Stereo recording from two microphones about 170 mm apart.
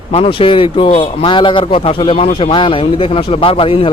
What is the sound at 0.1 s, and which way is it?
A man's voice, 35° left (ahead or behind).